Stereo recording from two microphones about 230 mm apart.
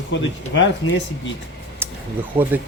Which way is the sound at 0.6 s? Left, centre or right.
Left.